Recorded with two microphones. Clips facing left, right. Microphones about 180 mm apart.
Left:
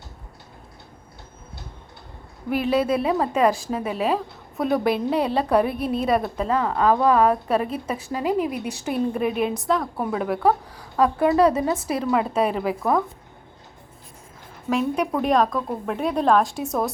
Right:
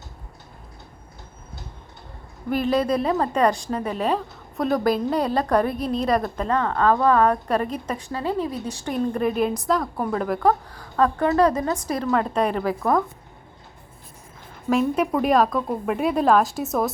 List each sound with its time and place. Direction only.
2.5 s a woman's voice: 5° left (ahead or behind)
14.7 s a woman's voice: centre (ahead or behind)